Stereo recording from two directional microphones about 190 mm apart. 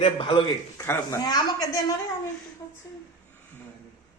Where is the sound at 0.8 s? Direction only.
15° left (ahead or behind).